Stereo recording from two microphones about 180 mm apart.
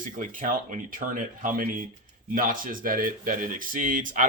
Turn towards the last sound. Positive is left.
turn(degrees=-45)  # may be behind; listen again after turning